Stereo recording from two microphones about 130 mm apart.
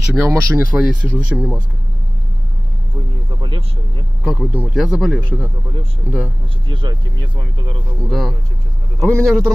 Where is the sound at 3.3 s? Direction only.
40° right (ahead or behind).